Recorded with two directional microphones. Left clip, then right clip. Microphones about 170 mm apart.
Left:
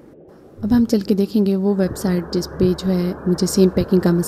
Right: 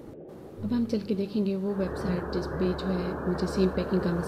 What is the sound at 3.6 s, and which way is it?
Speech, 70° left (ahead or behind).